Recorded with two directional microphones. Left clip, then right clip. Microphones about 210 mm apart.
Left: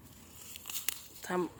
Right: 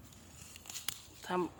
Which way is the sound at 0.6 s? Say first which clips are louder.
Left 3 dB; 20° left (ahead or behind).